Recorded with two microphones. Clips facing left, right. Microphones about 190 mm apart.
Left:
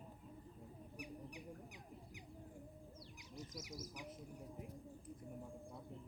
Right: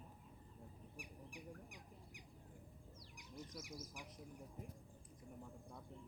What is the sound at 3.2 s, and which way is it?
Bird, 55° right (ahead or behind).